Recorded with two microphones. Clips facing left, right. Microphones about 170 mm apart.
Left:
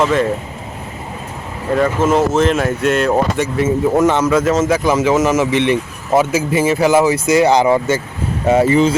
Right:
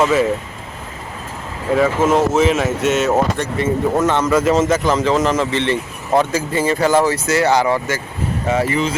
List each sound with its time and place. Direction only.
0.0 s speech: 5° right (ahead or behind)
1.7 s speech: 5° right (ahead or behind)
3.6 s speech: 10° left (ahead or behind)
4.3 s speech: centre (ahead or behind)
4.6 s speech: 10° left (ahead or behind); by 9.0 s 30° left (ahead or behind)